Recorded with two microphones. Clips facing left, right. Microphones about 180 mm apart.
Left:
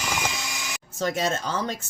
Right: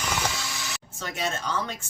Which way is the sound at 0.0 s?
10° left (ahead or behind).